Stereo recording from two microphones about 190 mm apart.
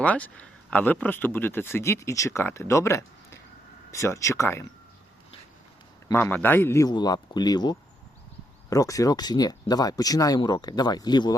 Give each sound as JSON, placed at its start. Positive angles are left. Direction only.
{"t": 0.0, "sound": "speech", "side_deg": 5}
{"t": 6.1, "sound": "speech", "side_deg": 10}